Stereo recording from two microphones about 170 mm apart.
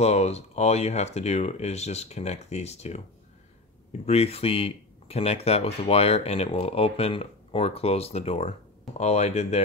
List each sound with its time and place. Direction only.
0.0 s speech: 40° left (ahead or behind)
4.0 s speech: 35° left (ahead or behind)